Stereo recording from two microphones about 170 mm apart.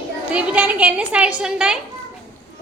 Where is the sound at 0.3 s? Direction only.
5° right (ahead or behind).